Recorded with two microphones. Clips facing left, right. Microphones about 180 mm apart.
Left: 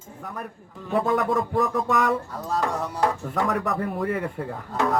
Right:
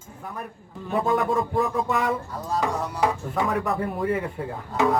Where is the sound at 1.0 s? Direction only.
30° right (ahead or behind).